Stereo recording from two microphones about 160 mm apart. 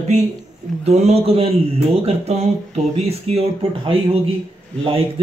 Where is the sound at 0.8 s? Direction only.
40° right (ahead or behind).